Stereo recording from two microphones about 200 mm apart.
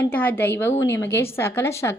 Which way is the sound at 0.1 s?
10° left (ahead or behind).